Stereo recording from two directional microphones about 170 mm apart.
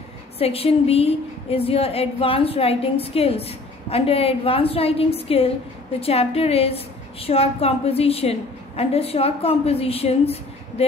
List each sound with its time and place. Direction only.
0.4 s a woman's voice: 35° left (ahead or behind)